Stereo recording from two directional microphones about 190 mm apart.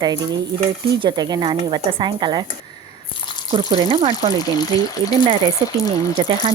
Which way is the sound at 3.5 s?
25° right (ahead or behind).